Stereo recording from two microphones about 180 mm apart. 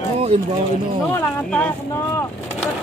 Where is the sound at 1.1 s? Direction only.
10° left (ahead or behind).